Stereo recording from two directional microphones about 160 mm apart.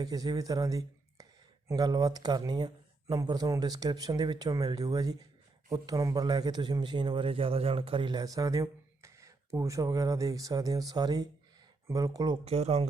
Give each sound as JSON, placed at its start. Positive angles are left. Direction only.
{"t": 0.0, "sound": "a man's voice", "side_deg": -25}
{"t": 12.5, "sound": "speech", "side_deg": -40}